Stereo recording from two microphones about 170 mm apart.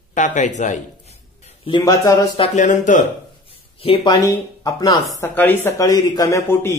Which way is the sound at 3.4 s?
35° left (ahead or behind).